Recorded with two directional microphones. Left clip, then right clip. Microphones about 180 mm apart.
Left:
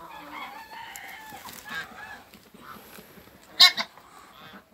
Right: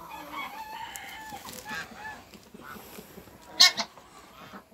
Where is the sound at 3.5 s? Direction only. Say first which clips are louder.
Left 3 dB; 15° left (ahead or behind).